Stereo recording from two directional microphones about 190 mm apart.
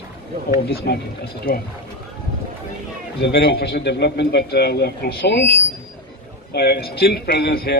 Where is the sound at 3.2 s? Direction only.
55° left (ahead or behind).